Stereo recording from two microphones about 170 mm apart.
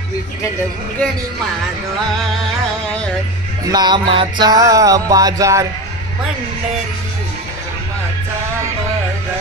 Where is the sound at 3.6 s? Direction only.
25° right (ahead or behind).